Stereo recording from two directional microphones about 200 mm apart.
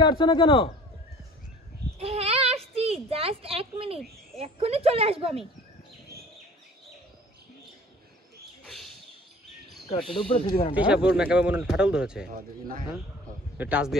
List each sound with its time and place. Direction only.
0.0 s speech: 25° left (ahead or behind)
2.0 s a child's voice: 30° right (ahead or behind)
8.6 s a sound: centre (ahead or behind)
10.2 s speech: 25° left (ahead or behind)
10.9 s speech: 5° right (ahead or behind)
12.3 s speech: 45° right (ahead or behind)
13.6 s a man's voice: 5° right (ahead or behind)